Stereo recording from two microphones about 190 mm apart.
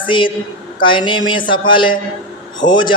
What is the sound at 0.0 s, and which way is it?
A woman's voice, 25° left (ahead or behind).